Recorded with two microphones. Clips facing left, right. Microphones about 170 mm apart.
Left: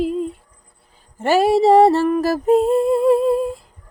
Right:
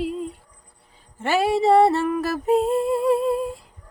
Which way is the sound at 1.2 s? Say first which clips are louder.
Left 5 dB; 40° left (ahead or behind).